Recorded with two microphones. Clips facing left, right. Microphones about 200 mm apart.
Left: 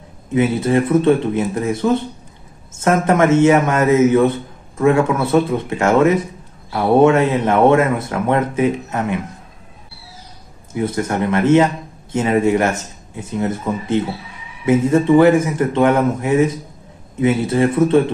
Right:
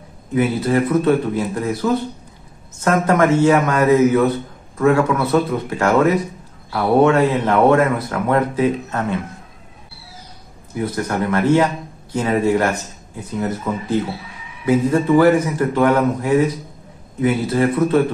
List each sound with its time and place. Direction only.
0.3 s speech: 25° left (ahead or behind)
10.7 s a man's voice: 25° left (ahead or behind)